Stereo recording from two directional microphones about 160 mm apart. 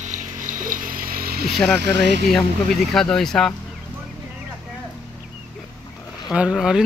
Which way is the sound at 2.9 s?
5° left (ahead or behind).